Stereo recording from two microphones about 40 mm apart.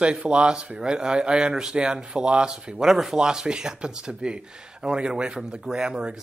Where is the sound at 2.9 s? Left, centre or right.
Centre.